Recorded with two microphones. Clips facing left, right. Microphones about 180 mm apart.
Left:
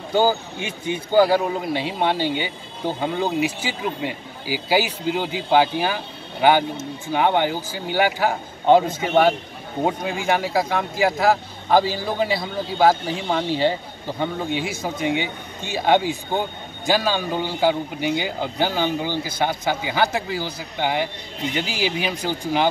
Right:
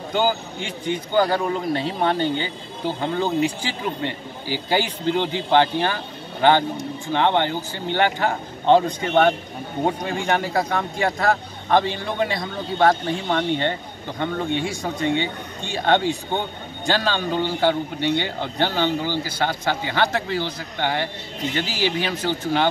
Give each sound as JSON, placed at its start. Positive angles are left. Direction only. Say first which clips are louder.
{"t": 0.8, "sound": "speech", "louder": "left 3 dB", "side_deg": 5}